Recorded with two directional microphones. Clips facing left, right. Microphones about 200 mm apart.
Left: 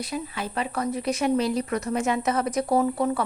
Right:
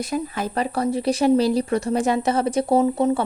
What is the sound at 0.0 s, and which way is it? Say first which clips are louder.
A woman's voice: right 6 dB; 45° right (ahead or behind).